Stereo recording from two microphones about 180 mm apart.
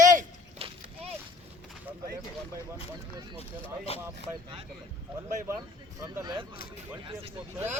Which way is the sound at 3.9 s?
35° left (ahead or behind).